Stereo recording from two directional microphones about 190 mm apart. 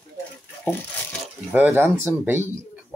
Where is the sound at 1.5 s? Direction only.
10° right (ahead or behind).